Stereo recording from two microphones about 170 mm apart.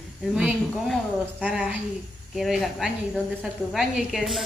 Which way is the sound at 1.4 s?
10° right (ahead or behind).